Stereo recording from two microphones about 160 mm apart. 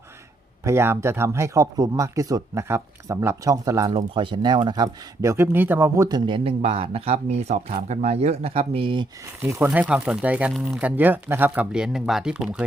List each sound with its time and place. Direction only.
0.6 s speech: 15° right (ahead or behind)
3.9 s speech: 30° right (ahead or behind); by 6.1 s 15° right (ahead or behind)
6.1 s speech: 30° right (ahead or behind)
9.5 s speech: 10° right (ahead or behind)